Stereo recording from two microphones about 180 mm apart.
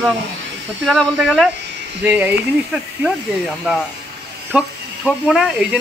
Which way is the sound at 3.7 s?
5° right (ahead or behind).